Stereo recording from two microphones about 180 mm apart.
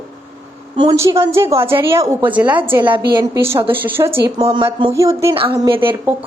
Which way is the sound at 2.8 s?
25° right (ahead or behind).